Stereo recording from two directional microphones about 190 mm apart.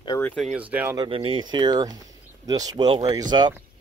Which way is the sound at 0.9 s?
25° right (ahead or behind).